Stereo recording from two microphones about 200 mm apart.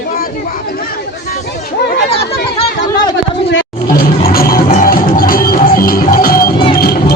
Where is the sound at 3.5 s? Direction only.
55° left (ahead or behind).